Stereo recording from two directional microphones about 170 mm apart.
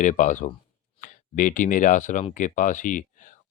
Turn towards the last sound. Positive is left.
turn(degrees=50)  # may be behind; listen again after turning